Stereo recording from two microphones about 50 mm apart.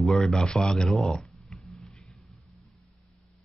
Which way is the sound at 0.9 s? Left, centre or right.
Centre.